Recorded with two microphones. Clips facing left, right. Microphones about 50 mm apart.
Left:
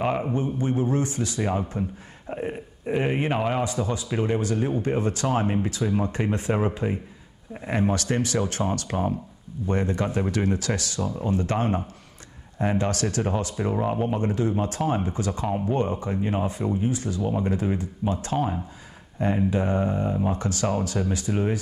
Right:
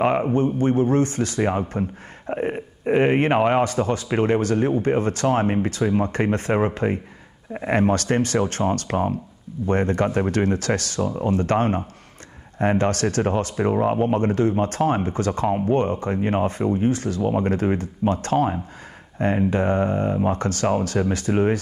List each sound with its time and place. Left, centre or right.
0.3 s speech: right
11.0 s speech: right